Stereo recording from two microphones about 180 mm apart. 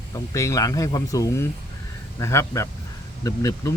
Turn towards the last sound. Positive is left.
turn(degrees=20)  # may be behind; listen again after turning